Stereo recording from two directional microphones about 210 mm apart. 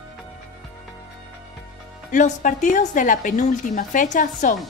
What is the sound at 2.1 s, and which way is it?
A woman's voice, 35° left (ahead or behind).